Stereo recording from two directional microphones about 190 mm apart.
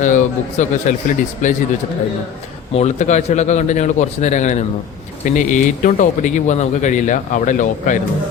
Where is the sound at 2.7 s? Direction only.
35° left (ahead or behind).